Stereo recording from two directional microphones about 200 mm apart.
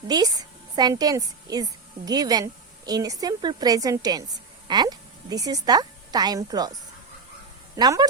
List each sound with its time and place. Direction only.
0.1 s a woman's voice: 20° right (ahead or behind)
7.8 s a woman's voice: 20° right (ahead or behind)